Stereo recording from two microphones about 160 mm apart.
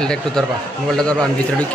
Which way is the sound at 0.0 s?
5° left (ahead or behind).